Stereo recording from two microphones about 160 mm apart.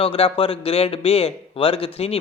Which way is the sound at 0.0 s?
35° left (ahead or behind).